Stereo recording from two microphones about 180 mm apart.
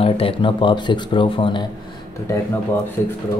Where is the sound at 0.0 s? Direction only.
30° left (ahead or behind).